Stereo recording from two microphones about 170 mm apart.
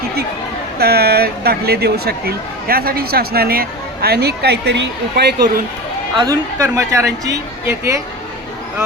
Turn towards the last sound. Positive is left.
turn(degrees=-15)  # may be behind; listen again after turning